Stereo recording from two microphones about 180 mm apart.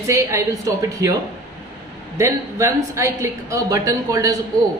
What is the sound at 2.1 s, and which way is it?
A woman's voice, 15° right (ahead or behind).